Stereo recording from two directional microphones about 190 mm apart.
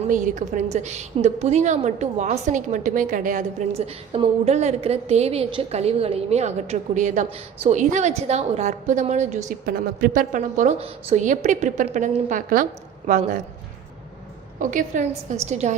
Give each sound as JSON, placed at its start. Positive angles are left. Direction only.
{"t": 0.1, "sound": "a woman's voice", "side_deg": -45}
{"t": 9.5, "sound": "a woman's voice", "side_deg": -50}
{"t": 14.6, "sound": "a woman's voice", "side_deg": -45}